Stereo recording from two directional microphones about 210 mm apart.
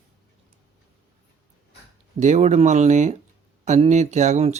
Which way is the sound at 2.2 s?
35° right (ahead or behind).